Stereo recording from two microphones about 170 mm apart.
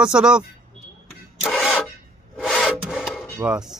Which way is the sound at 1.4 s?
Centre (ahead or behind).